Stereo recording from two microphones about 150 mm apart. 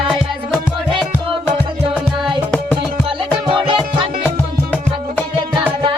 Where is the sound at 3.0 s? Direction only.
35° right (ahead or behind).